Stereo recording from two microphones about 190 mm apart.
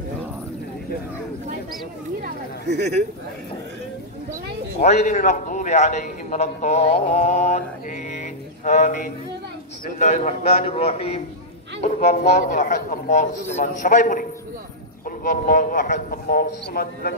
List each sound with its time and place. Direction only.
4.7 s a man's voice: 40° left (ahead or behind); by 17.1 s 55° left (ahead or behind)